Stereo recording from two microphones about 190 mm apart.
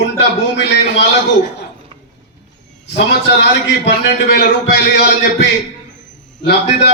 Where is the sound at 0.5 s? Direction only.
65° left (ahead or behind).